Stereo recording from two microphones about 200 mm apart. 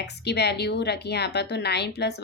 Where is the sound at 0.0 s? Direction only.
55° left (ahead or behind).